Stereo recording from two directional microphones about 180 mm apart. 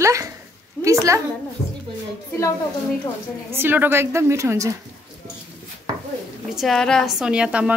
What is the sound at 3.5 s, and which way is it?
A woman's voice, 10° right (ahead or behind).